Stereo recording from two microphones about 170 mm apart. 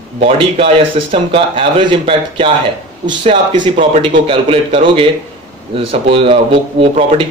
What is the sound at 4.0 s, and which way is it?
A man's voice, 30° right (ahead or behind).